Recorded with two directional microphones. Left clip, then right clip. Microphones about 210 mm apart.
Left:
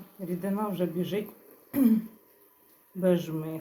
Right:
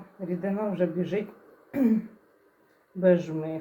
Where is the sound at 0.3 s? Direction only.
25° left (ahead or behind).